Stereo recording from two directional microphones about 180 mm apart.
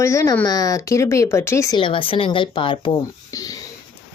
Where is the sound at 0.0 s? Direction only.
15° left (ahead or behind).